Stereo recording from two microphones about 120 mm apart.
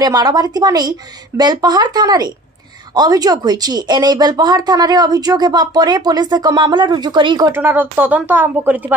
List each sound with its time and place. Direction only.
0.0 s speech: 35° right (ahead or behind)
7.5 s speech: 15° right (ahead or behind)